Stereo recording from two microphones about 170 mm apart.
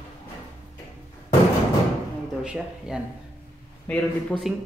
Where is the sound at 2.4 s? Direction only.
5° right (ahead or behind).